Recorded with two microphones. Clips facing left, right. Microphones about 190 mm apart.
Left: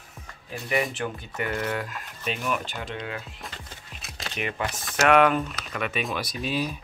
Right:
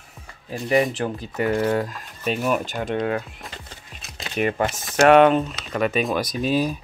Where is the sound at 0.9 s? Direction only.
35° right (ahead or behind); by 3.2 s 50° right (ahead or behind).